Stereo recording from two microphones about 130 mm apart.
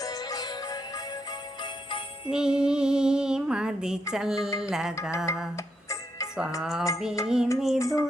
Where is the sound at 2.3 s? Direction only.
5° right (ahead or behind).